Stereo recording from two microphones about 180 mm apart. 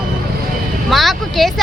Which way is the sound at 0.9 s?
Centre (ahead or behind).